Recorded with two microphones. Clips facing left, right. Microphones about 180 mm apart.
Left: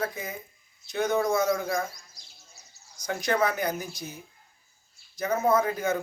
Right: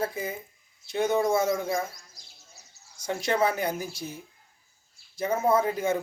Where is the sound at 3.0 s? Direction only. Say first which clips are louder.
Right 1 dB; 30° right (ahead or behind).